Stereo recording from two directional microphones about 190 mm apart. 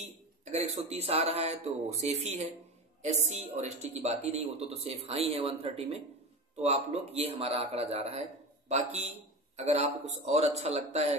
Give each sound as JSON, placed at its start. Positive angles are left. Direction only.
{"t": 0.5, "sound": "a man's voice", "side_deg": -35}